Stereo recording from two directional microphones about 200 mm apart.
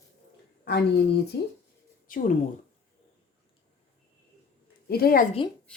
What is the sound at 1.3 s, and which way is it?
Speech, 55° left (ahead or behind).